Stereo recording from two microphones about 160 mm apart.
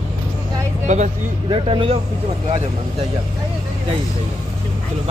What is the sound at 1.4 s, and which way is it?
Speech, 35° right (ahead or behind).